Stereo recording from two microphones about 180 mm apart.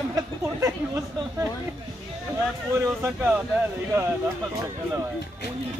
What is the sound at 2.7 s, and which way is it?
Speech, 15° right (ahead or behind).